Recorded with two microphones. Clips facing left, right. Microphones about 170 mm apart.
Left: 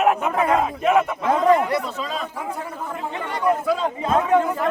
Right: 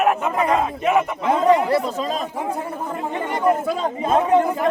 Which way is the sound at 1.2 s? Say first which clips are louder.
Right 2 dB; 20° right (ahead or behind).